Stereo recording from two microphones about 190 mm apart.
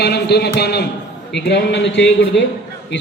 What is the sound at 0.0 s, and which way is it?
A man's voice, 60° left (ahead or behind).